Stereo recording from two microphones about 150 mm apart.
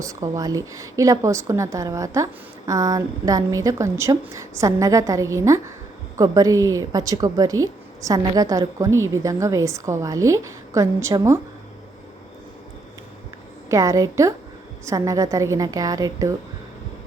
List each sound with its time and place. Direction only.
0.0 s a woman's voice: 20° right (ahead or behind)
13.7 s a woman's voice: 20° right (ahead or behind)